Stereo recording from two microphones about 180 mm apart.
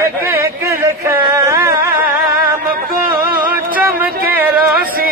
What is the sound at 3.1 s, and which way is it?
Music, 10° right (ahead or behind).